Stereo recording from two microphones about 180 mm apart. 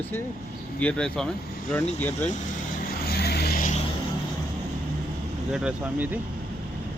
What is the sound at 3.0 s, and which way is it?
Vehicle, 60° left (ahead or behind).